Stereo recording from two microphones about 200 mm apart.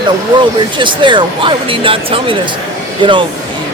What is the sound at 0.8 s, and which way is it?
Speech, 25° right (ahead or behind).